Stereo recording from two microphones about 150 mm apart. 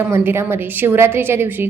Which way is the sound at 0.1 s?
15° right (ahead or behind).